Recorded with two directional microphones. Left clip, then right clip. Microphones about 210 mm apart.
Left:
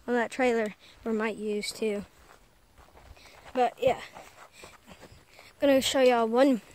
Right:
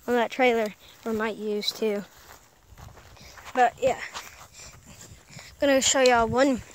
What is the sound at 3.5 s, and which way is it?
Walk, 15° left (ahead or behind).